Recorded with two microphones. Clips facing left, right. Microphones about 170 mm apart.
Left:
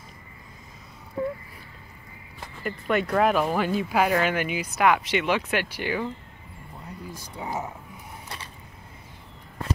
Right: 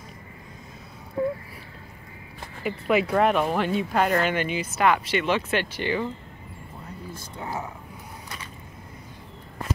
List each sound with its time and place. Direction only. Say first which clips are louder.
2.6 s speech: right 3 dB; 5° right (ahead or behind)
7.1 s speech: left 1 dB; 15° left (ahead or behind)